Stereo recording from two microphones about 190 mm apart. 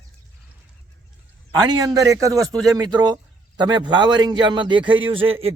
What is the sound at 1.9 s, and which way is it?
Speech, 15° right (ahead or behind).